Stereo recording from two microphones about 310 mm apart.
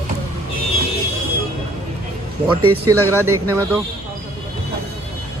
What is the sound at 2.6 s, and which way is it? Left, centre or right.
Speech, right.